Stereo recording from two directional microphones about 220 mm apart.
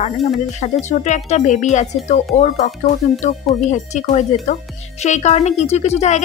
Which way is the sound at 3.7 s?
30° left (ahead or behind).